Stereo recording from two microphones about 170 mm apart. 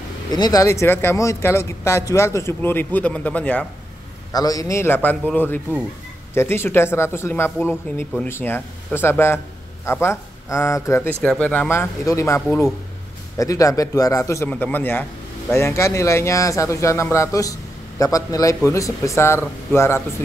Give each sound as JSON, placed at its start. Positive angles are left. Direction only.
{"t": 0.3, "sound": "a man's voice", "side_deg": 20}
{"t": 4.3, "sound": "a man's voice", "side_deg": 20}